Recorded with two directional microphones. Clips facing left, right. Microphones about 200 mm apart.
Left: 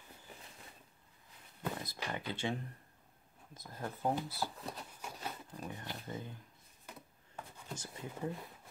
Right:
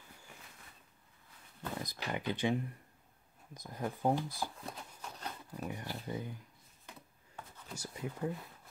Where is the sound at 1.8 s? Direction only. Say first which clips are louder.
Right 3 dB; 15° right (ahead or behind).